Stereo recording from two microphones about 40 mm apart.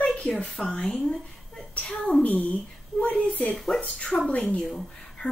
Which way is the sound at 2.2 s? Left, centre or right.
Left.